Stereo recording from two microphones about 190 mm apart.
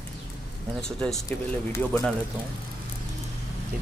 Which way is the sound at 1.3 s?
15° left (ahead or behind).